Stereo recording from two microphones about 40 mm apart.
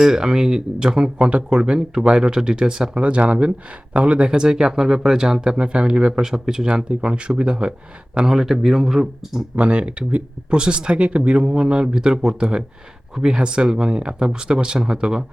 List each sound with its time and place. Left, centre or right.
0.0 s speech: centre
3.0 s speech: right; by 9.4 s centre
9.6 s speech: right
10.6 s speech: right